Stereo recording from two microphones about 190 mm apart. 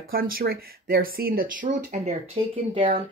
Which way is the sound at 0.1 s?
50° right (ahead or behind).